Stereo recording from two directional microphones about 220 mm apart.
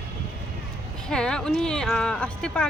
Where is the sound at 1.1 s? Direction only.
5° left (ahead or behind).